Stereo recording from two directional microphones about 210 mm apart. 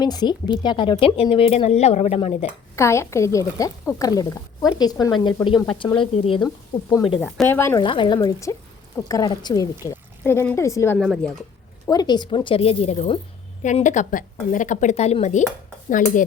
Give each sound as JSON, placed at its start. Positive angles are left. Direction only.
{"t": 0.0, "sound": "a woman's voice", "side_deg": 20}
{"t": 2.7, "sound": "a woman's voice", "side_deg": 15}
{"t": 7.2, "sound": "speech", "side_deg": 10}
{"t": 7.8, "sound": "a woman's voice", "side_deg": 25}
{"t": 10.9, "sound": "a woman's voice", "side_deg": 0}
{"t": 11.9, "sound": "a woman's voice", "side_deg": 20}